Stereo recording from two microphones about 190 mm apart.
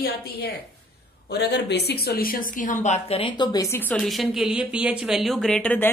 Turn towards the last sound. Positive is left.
turn(degrees=5)  # may be behind; listen again after turning